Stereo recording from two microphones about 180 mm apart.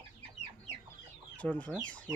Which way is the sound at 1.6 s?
5° left (ahead or behind).